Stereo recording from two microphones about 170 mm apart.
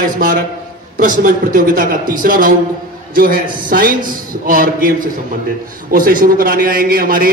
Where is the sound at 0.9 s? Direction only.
50° right (ahead or behind).